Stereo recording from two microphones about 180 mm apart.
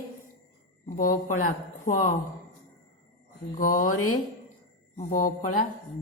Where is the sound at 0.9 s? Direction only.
50° left (ahead or behind).